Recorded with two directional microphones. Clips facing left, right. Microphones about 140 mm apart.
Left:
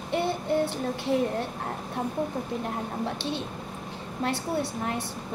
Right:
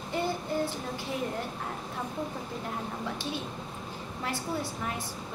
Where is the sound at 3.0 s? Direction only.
65° left (ahead or behind).